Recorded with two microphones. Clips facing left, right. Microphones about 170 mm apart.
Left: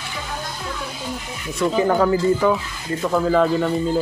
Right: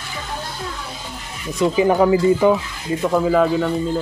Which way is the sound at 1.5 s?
15° right (ahead or behind).